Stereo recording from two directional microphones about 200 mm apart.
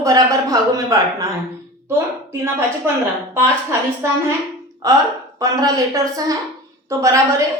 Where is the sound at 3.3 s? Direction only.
15° right (ahead or behind).